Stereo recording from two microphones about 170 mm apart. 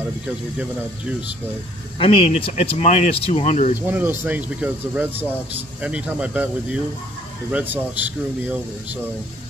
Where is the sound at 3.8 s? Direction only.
10° right (ahead or behind).